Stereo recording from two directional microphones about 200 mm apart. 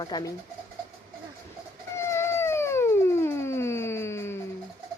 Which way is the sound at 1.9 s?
15° left (ahead or behind).